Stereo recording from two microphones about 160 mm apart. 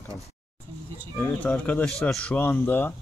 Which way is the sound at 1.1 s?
10° left (ahead or behind).